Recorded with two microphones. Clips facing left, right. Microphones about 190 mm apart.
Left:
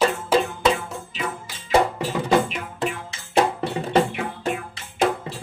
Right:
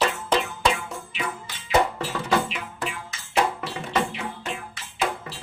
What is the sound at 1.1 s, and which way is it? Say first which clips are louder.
Music: left 2 dB; 40° left (ahead or behind).